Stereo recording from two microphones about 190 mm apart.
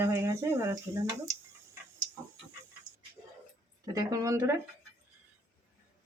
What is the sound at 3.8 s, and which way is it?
Speech, 20° right (ahead or behind).